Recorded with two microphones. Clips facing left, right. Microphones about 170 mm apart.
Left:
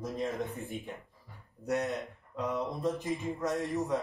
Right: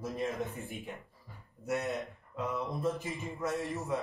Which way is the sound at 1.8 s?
Centre (ahead or behind).